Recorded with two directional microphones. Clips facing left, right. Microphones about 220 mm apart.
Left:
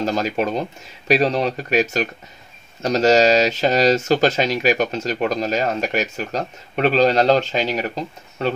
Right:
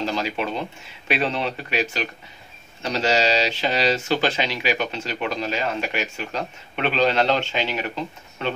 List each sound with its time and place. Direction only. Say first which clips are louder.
0.0 s speech: left 5 dB; 45° left (ahead or behind)